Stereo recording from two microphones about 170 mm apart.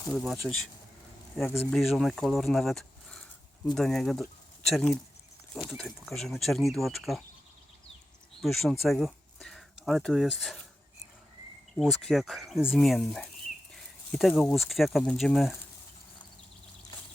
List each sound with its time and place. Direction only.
0.1 s speech: centre (ahead or behind)
8.4 s speech: centre (ahead or behind)
11.8 s speech: centre (ahead or behind)